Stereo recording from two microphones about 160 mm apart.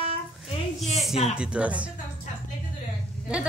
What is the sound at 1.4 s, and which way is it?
Speech, 10° right (ahead or behind).